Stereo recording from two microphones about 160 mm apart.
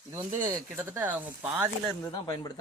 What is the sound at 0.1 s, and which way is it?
Speech, 20° right (ahead or behind).